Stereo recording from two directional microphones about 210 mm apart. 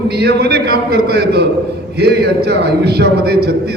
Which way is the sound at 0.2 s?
50° right (ahead or behind).